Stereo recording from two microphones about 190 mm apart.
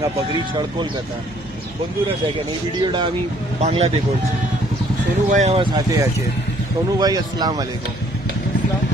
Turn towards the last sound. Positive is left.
turn(degrees=-20)  # may be behind; listen again after turning